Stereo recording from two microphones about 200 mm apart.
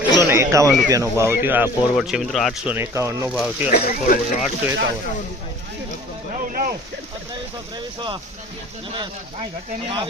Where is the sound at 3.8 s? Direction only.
40° left (ahead or behind).